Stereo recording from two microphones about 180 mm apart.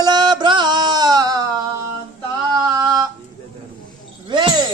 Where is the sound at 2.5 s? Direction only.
20° right (ahead or behind).